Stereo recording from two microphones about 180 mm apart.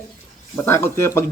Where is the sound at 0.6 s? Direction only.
15° left (ahead or behind).